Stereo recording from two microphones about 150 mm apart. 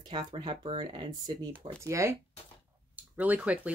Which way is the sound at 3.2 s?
10° right (ahead or behind).